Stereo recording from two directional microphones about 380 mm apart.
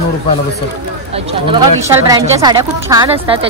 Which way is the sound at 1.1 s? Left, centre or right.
Centre.